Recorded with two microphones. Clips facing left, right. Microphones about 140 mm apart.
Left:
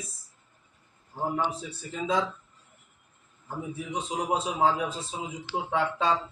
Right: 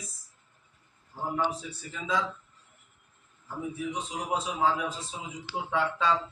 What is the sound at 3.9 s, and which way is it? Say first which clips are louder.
A man's voice: left 7 dB; 25° left (ahead or behind).